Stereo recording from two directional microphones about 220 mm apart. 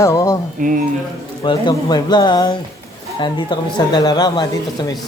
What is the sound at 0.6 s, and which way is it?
Speech, 35° right (ahead or behind).